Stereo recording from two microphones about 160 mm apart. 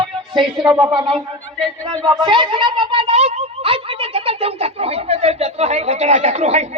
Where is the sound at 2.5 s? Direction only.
30° right (ahead or behind).